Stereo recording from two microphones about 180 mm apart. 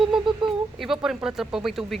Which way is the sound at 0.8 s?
Centre (ahead or behind).